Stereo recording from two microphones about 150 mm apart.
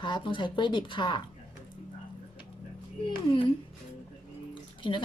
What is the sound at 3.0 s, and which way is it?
Speech, 35° left (ahead or behind).